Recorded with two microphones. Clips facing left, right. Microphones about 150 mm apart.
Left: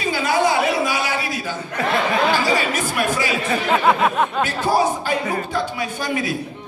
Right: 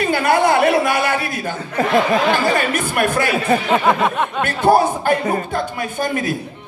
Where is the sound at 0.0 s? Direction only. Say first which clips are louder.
Right 4 dB; 60° right (ahead or behind).